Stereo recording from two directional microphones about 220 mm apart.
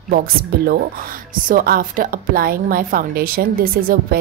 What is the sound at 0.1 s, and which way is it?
A woman's voice, 45° right (ahead or behind).